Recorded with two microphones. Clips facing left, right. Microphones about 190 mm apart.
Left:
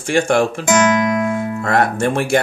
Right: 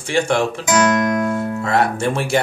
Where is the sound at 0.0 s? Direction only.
50° left (ahead or behind).